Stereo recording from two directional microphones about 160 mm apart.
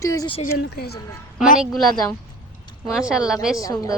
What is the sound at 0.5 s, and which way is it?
Speech, 80° left.